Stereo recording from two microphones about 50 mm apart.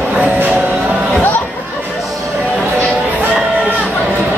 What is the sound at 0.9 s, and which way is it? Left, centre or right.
Music, centre.